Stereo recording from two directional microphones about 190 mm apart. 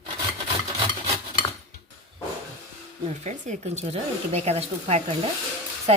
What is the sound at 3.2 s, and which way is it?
A woman's voice, 40° right (ahead or behind).